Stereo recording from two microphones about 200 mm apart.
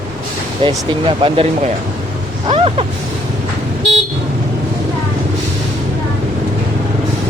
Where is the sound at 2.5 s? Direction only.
30° right (ahead or behind).